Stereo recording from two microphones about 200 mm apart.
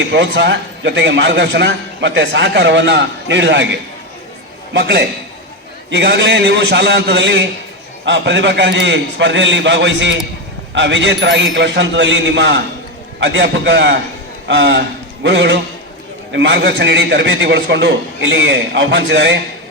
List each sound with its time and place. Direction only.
0.1 s a man's voice: 60° right (ahead or behind)